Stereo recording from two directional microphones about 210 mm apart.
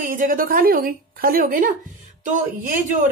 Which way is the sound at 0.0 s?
40° right (ahead or behind).